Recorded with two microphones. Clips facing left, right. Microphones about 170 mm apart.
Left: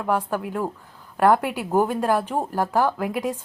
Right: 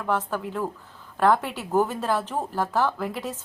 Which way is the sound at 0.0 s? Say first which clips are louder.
Left 3 dB; 10° left (ahead or behind).